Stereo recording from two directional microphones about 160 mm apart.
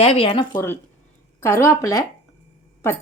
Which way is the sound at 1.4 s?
15° left (ahead or behind).